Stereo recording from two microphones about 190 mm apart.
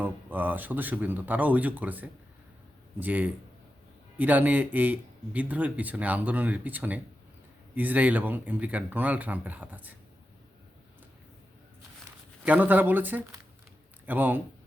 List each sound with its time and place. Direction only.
0.0 s speech: 10° right (ahead or behind)
12.5 s speech: 10° right (ahead or behind)